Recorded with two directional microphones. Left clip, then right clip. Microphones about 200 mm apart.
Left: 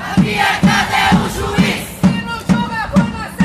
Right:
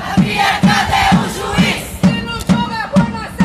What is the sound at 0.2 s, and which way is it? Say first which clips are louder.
Crowd: even; 30° right (ahead or behind).